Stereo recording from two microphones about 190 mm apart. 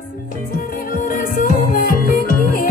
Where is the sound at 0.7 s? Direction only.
45° left (ahead or behind).